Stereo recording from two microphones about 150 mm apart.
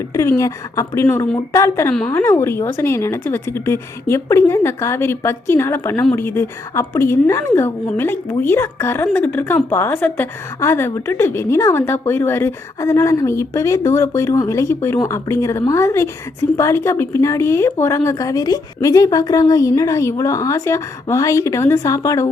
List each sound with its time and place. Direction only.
0.1 s a woman's voice: 20° left (ahead or behind)
1.9 s a woman's voice: 5° left (ahead or behind)
2.1 s a woman's voice: 15° left (ahead or behind)